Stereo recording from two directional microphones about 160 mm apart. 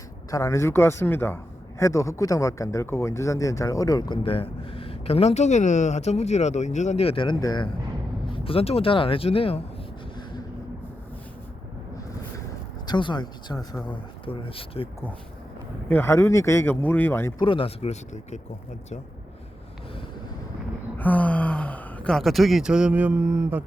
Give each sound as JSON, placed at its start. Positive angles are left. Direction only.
{"t": 0.3, "sound": "speech", "side_deg": 20}
{"t": 7.3, "sound": "speech", "side_deg": 25}
{"t": 8.3, "sound": "speech", "side_deg": 35}
{"t": 12.9, "sound": "speech", "side_deg": 30}
{"t": 14.3, "sound": "speech", "side_deg": 35}
{"t": 15.9, "sound": "speech", "side_deg": 15}
{"t": 17.3, "sound": "speech", "side_deg": 30}
{"t": 21.0, "sound": "speech", "side_deg": 10}